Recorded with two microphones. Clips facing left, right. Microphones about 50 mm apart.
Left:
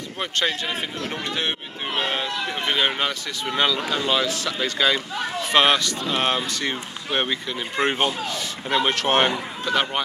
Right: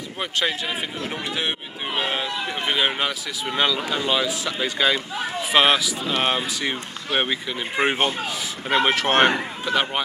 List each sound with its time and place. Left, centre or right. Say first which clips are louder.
0.2 s speech: even; centre